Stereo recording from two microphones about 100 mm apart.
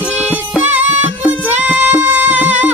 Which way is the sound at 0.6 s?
15° right (ahead or behind).